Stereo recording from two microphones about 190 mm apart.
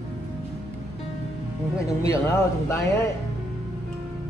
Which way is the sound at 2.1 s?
15° left (ahead or behind).